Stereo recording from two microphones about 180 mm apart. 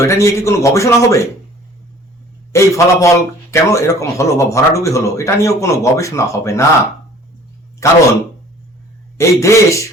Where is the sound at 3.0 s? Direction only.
15° left (ahead or behind).